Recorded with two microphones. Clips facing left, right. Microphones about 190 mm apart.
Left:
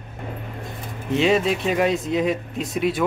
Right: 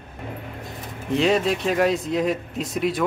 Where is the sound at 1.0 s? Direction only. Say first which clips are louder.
Left 1 dB; centre (ahead or behind).